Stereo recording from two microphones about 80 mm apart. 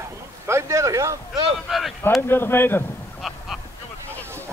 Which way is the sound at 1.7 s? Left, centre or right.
Centre.